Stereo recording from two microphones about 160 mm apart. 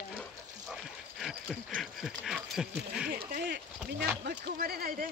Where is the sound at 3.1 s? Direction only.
70° right (ahead or behind).